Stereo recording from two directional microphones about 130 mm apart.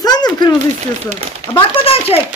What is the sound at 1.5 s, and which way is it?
Speech, 45° left (ahead or behind).